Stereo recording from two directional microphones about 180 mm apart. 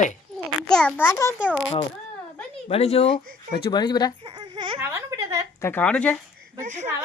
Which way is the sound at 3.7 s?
25° left (ahead or behind).